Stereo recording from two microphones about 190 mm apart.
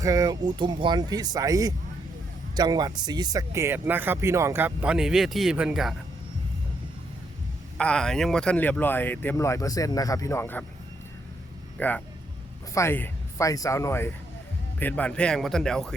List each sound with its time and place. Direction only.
0.0 s speech: 20° right (ahead or behind)
7.8 s speech: 5° left (ahead or behind)
11.8 s speech: 10° left (ahead or behind)